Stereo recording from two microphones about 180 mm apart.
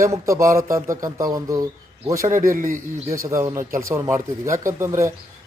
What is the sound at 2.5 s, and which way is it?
Speech, 45° right (ahead or behind).